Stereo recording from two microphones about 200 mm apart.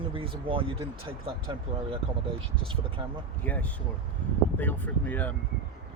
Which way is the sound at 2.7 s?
25° right (ahead or behind).